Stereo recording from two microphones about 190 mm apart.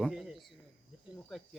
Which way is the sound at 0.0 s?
Centre (ahead or behind).